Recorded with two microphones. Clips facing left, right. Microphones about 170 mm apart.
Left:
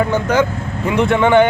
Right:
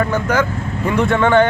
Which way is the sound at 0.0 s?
20° left (ahead or behind).